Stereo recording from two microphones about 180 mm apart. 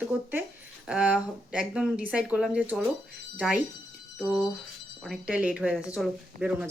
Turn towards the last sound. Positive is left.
turn(degrees=-5)  # may be behind; listen again after turning